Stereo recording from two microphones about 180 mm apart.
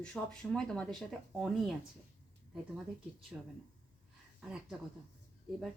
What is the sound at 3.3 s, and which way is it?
Speech, 10° right (ahead or behind).